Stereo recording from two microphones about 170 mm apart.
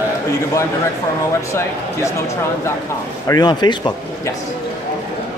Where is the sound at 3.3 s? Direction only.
25° left (ahead or behind).